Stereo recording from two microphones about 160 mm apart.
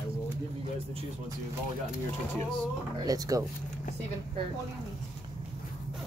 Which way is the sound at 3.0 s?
20° right (ahead or behind).